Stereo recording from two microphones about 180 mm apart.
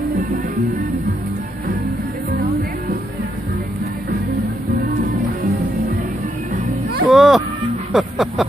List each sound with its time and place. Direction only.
6.5 s music: 60° right (ahead or behind)
7.1 s music: centre (ahead or behind)
7.9 s vehicle: centre (ahead or behind)